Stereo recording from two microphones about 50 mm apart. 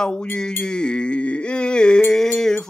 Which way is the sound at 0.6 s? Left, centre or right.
Centre.